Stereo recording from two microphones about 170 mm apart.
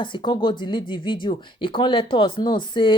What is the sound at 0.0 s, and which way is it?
Speech, 25° left (ahead or behind).